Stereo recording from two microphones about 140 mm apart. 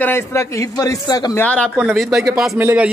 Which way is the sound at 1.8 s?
Centre (ahead or behind).